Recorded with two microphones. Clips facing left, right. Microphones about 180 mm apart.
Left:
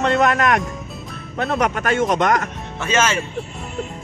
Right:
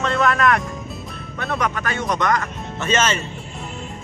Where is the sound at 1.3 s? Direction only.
50° left (ahead or behind).